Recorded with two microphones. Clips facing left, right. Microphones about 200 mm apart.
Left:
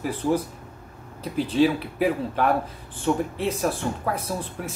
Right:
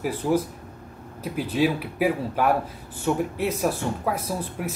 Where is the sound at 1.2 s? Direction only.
10° right (ahead or behind).